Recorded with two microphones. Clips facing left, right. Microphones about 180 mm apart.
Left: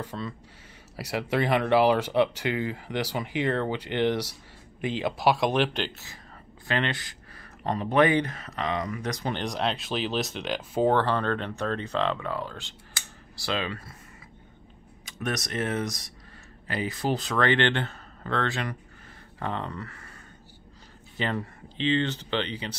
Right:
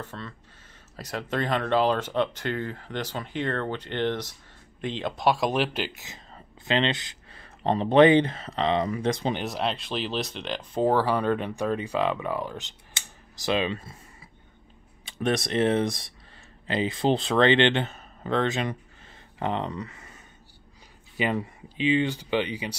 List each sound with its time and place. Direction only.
0.0 s speech: 10° left (ahead or behind); by 6.0 s 5° right (ahead or behind)
6.0 s speech: 20° right (ahead or behind)
9.3 s speech: 5° right (ahead or behind); by 13.9 s 20° right (ahead or behind)
15.0 s speech: 30° right (ahead or behind)
21.2 s speech: 10° right (ahead or behind)